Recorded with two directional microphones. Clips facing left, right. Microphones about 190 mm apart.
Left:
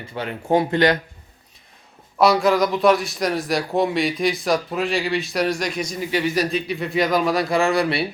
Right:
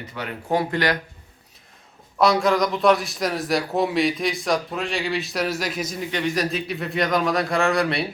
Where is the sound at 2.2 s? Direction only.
Centre (ahead or behind).